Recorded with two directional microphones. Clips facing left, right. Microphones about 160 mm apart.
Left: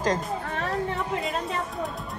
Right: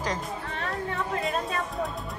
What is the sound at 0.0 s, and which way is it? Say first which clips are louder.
Music: left 5 dB; 45° left (ahead or behind).